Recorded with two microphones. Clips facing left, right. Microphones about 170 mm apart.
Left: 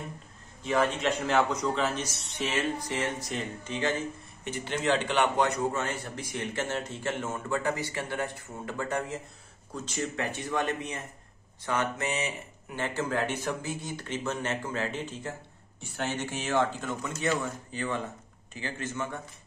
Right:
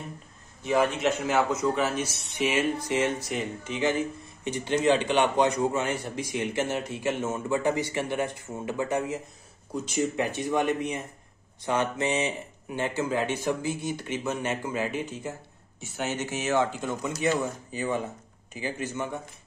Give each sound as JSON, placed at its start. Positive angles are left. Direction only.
{"t": 0.7, "sound": "a man's voice", "side_deg": -10}
{"t": 16.8, "sound": "a man's voice", "side_deg": -20}